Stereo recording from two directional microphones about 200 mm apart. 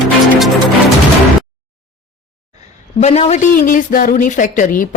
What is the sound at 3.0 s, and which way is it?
A man's voice, 35° left (ahead or behind).